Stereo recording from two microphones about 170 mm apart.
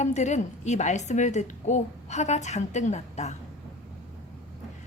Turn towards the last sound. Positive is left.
turn(degrees=40)  # may be behind; listen again after turning